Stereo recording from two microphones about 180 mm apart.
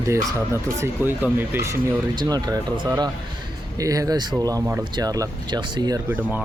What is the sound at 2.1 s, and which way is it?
Speech, 20° right (ahead or behind).